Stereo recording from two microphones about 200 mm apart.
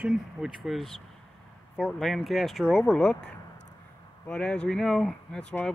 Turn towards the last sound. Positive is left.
turn(degrees=5)  # may be behind; listen again after turning